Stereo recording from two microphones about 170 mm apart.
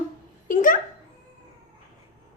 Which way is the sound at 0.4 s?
50° left (ahead or behind).